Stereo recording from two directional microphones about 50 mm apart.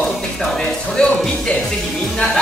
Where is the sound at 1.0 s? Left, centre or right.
Centre.